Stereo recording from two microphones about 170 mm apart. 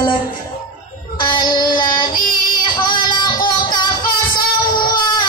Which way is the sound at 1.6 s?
25° left (ahead or behind).